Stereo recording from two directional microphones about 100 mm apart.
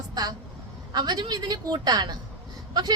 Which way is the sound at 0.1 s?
40° right (ahead or behind).